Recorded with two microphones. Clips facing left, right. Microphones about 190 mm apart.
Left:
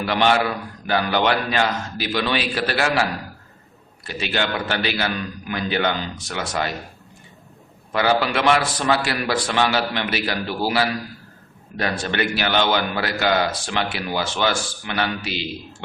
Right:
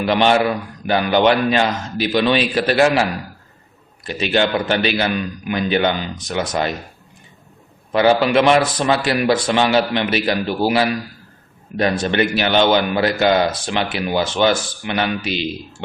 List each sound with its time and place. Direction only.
0.0 s a man's voice: 20° right (ahead or behind)
4.0 s a man's voice: 20° right (ahead or behind)
7.9 s a man's voice: 25° right (ahead or behind)